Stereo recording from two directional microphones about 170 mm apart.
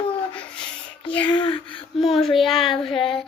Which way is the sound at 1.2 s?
30° left (ahead or behind).